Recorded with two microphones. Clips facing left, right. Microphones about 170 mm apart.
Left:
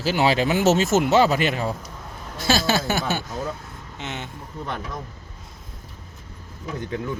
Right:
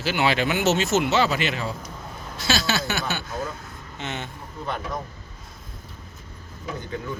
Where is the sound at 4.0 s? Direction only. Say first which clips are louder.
Right 1 dB; 15° left (ahead or behind).